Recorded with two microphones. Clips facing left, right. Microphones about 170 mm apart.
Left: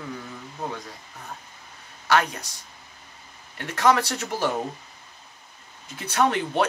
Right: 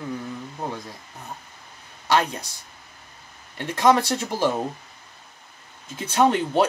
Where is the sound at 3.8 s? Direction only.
25° right (ahead or behind).